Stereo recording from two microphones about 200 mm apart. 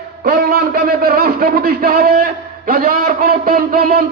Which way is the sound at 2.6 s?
45° right (ahead or behind).